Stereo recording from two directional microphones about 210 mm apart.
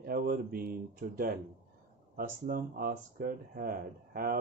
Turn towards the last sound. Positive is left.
turn(degrees=-45)  # may be behind; listen again after turning